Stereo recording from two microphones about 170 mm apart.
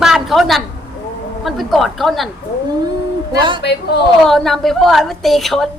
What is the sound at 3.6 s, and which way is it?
Speech, 75° left (ahead or behind).